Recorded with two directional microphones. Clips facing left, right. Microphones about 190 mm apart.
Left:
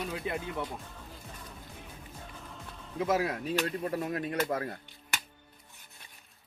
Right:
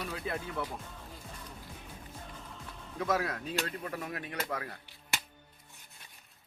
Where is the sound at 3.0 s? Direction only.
25° left (ahead or behind).